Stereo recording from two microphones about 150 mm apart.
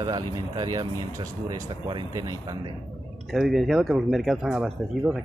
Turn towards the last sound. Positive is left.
turn(degrees=-5)  # may be behind; listen again after turning